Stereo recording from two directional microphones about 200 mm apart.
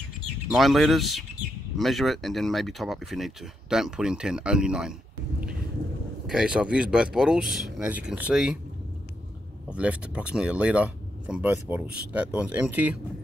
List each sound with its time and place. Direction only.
0.5 s speech: centre (ahead or behind)
6.2 s speech: 5° right (ahead or behind)
9.7 s speech: 5° right (ahead or behind)